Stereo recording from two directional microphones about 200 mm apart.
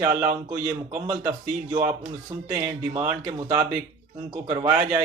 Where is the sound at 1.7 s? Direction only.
15° right (ahead or behind).